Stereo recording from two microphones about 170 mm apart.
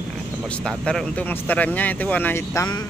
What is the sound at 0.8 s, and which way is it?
Speech, 5° left (ahead or behind).